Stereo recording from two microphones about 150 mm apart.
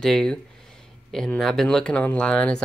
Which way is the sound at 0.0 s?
5° left (ahead or behind).